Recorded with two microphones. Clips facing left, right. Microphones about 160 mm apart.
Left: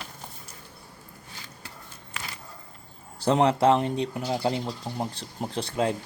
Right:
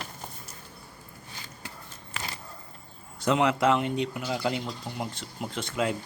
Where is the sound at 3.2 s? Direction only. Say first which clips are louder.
Left 3 dB; 35° left (ahead or behind).